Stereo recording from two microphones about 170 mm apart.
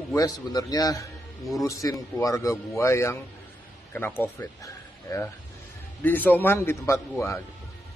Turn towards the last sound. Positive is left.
turn(degrees=15)  # may be behind; listen again after turning